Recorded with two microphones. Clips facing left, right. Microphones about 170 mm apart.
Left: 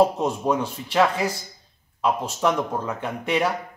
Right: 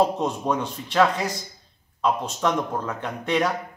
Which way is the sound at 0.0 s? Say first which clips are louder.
Left 2 dB; 5° left (ahead or behind).